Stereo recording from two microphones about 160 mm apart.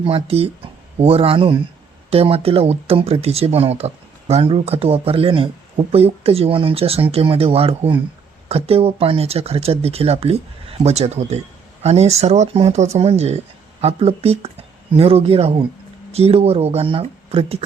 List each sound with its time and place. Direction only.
0.0 s speech: 35° right (ahead or behind)